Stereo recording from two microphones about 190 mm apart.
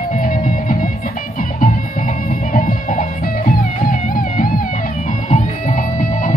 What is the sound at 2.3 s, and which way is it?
Music, 45° left (ahead or behind).